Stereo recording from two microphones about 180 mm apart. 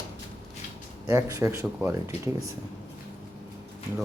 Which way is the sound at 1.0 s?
15° right (ahead or behind).